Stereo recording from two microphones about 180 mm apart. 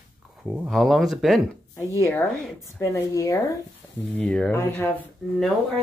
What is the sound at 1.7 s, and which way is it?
Speech, 15° left (ahead or behind).